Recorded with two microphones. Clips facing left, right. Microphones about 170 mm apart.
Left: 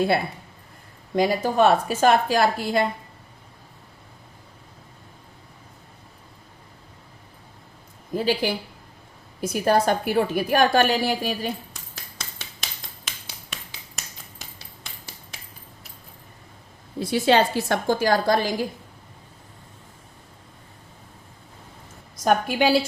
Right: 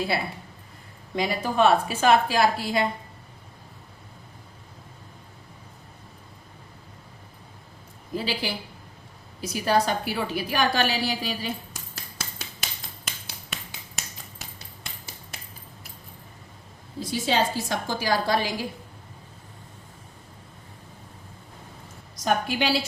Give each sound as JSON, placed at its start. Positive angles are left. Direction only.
{"t": 1.1, "sound": "a woman's voice", "side_deg": 45}
{"t": 8.1, "sound": "a woman's voice", "side_deg": 45}
{"t": 12.1, "sound": "finger snapping", "side_deg": -5}
{"t": 17.0, "sound": "a woman's voice", "side_deg": 65}
{"t": 22.1, "sound": "a woman's voice", "side_deg": 55}